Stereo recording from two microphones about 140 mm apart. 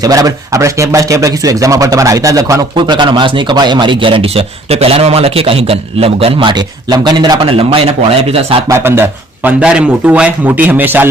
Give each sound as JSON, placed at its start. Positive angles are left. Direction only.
{"t": 0.0, "sound": "speech", "side_deg": -25}
{"t": 7.5, "sound": "speech", "side_deg": -45}
{"t": 8.7, "sound": "a man's voice", "side_deg": -15}